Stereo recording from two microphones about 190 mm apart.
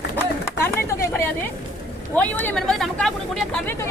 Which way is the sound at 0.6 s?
10° left (ahead or behind).